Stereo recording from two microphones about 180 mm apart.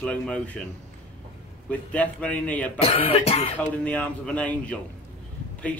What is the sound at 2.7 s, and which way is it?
Cough, 35° left (ahead or behind).